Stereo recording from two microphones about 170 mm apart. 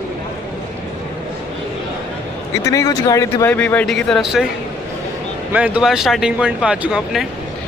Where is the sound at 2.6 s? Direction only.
20° left (ahead or behind).